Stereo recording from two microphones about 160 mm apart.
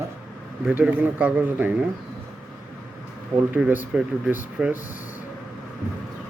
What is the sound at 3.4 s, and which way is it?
A man's voice, 10° right (ahead or behind).